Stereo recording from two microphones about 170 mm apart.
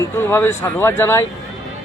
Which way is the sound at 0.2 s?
15° left (ahead or behind).